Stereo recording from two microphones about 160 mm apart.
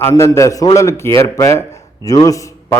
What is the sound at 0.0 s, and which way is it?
A man's voice, 15° left (ahead or behind).